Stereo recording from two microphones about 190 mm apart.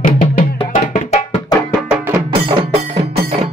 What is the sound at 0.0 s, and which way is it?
Music, 45° left (ahead or behind).